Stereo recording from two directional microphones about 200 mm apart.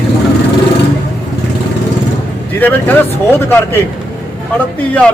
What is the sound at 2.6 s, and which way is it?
A man's voice, 10° left (ahead or behind).